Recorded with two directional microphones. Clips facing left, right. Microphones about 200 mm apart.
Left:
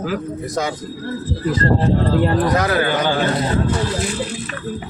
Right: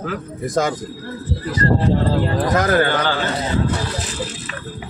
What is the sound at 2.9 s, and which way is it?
Speech, 15° left (ahead or behind).